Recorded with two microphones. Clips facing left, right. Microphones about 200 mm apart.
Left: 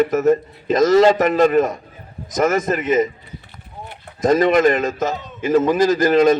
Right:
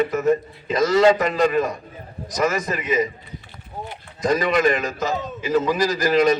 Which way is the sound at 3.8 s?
55° left (ahead or behind).